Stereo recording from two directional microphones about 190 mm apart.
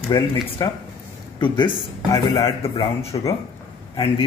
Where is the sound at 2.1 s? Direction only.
20° left (ahead or behind).